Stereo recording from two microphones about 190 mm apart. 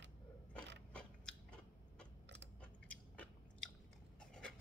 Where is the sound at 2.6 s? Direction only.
5° left (ahead or behind).